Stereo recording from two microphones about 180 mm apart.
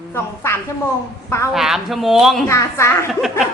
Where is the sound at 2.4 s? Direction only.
15° left (ahead or behind).